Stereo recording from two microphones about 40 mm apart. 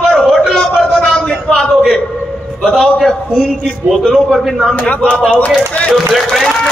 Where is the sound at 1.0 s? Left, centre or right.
Centre.